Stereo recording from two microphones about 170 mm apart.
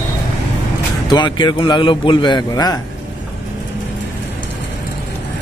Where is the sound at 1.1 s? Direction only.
25° left (ahead or behind).